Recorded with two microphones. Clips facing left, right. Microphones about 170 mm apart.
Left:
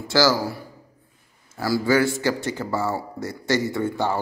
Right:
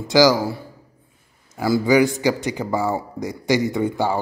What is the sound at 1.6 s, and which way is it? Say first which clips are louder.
Speech: right 4 dB; 15° right (ahead or behind).